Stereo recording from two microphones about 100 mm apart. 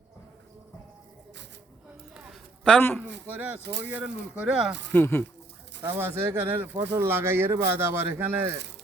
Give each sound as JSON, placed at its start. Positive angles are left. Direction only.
{"t": 3.2, "sound": "speech", "side_deg": -20}
{"t": 4.9, "sound": "speech", "side_deg": 20}
{"t": 5.8, "sound": "speech", "side_deg": -20}